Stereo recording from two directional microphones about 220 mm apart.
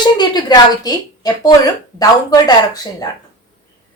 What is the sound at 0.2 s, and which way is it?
Speech, 20° left (ahead or behind).